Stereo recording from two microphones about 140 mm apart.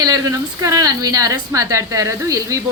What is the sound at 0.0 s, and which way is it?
A woman's voice, 25° right (ahead or behind).